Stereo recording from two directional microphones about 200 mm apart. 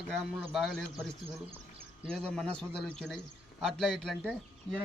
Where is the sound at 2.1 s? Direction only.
5° left (ahead or behind).